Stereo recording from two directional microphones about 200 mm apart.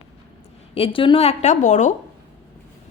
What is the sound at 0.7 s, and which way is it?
A woman's voice, 25° left (ahead or behind).